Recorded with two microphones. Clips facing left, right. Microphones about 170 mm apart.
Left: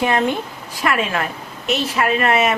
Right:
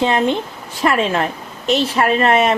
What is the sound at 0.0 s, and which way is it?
A woman's voice, 25° right (ahead or behind).